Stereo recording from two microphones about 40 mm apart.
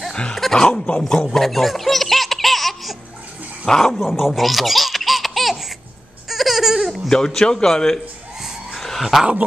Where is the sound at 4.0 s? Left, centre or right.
Centre.